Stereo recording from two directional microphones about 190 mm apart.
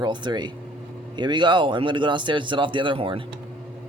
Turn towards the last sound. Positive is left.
turn(degrees=-25)  # may be behind; listen again after turning